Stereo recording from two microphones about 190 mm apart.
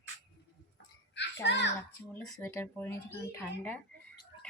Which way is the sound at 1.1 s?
65° left (ahead or behind).